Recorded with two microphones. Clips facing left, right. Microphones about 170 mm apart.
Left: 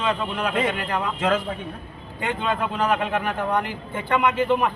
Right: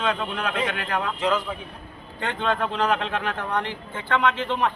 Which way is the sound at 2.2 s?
10° left (ahead or behind).